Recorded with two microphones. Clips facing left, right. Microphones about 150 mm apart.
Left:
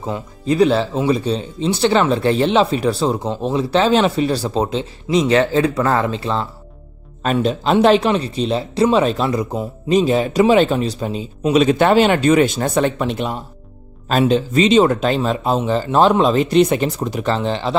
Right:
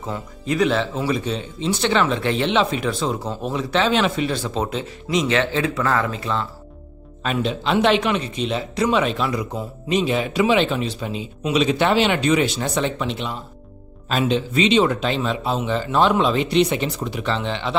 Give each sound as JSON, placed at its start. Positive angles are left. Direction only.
{"t": 0.5, "sound": "speech", "side_deg": 35}
{"t": 7.2, "sound": "speech", "side_deg": 40}